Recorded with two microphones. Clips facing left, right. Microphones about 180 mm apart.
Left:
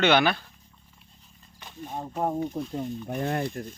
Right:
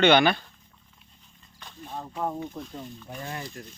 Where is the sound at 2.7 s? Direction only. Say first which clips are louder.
Left 8 dB; 50° left (ahead or behind).